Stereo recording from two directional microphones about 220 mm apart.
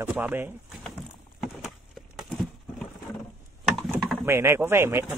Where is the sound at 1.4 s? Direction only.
Centre (ahead or behind).